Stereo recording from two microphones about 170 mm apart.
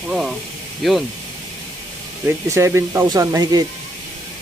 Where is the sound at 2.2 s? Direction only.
15° right (ahead or behind).